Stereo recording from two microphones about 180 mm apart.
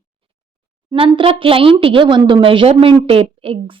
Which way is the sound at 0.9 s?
30° right (ahead or behind).